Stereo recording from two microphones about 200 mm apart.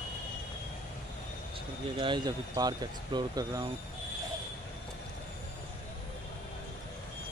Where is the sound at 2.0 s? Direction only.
25° right (ahead or behind).